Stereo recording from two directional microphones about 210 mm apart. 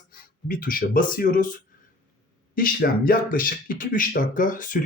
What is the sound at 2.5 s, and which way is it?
Speech, 40° left (ahead or behind).